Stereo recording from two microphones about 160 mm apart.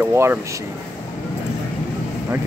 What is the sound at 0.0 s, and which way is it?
Speech, 15° right (ahead or behind).